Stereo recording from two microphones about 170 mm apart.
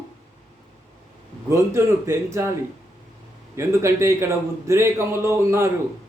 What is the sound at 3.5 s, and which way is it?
A man's voice, 15° right (ahead or behind).